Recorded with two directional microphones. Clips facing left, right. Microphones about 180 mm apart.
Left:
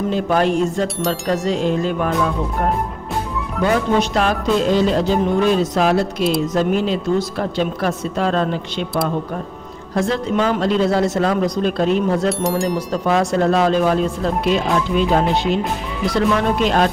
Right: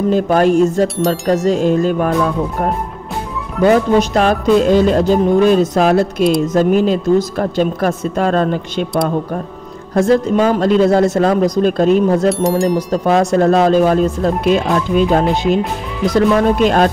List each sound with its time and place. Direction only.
0.1 s speech: 45° right (ahead or behind)
3.6 s speech: 45° right (ahead or behind)
9.9 s speech: 45° right (ahead or behind)
12.3 s speech: centre (ahead or behind)
12.7 s speech: 40° right (ahead or behind)